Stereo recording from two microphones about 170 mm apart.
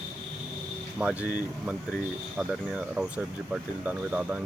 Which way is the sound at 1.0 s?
5° right (ahead or behind).